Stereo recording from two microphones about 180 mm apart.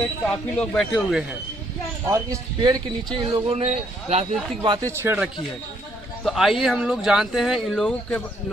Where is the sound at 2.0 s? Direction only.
20° right (ahead or behind).